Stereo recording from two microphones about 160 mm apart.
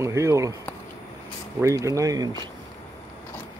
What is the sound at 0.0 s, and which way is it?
Speech, 20° right (ahead or behind).